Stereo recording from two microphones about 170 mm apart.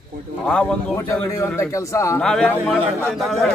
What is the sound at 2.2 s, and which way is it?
A man's voice, 5° left (ahead or behind).